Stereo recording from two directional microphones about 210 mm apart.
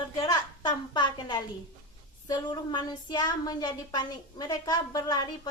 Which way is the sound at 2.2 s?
20° left (ahead or behind).